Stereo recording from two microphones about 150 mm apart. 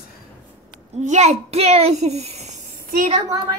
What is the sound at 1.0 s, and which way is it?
A child's voice, 50° right (ahead or behind).